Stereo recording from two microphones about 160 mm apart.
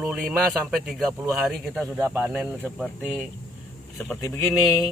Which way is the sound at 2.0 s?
10° right (ahead or behind).